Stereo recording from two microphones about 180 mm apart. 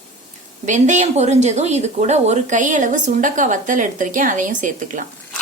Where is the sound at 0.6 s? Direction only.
40° right (ahead or behind).